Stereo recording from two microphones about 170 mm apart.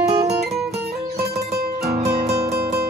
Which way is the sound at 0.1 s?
40° right (ahead or behind).